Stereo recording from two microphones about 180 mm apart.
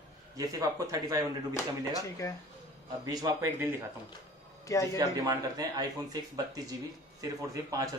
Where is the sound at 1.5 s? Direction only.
15° left (ahead or behind).